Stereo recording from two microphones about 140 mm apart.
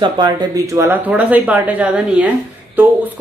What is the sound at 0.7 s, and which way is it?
Speech, 15° right (ahead or behind).